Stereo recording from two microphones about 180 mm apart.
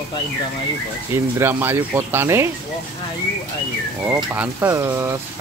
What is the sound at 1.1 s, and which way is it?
Speech, 15° right (ahead or behind).